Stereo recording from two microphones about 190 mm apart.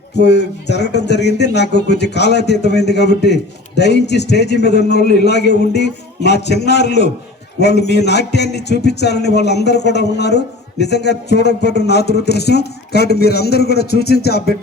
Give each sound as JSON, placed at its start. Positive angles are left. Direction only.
{"t": 0.2, "sound": "a man's voice", "side_deg": 65}